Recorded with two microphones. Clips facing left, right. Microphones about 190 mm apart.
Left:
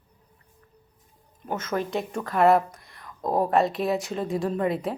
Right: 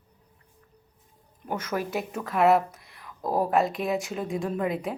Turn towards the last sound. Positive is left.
turn(degrees=0)  # may be behind; listen again after turning